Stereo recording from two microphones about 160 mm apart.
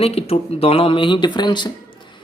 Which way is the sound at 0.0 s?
40° left (ahead or behind).